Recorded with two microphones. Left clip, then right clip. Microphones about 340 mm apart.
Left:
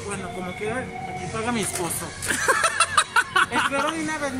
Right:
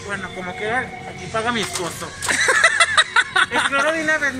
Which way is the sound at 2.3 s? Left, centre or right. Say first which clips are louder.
Right 6 dB; centre.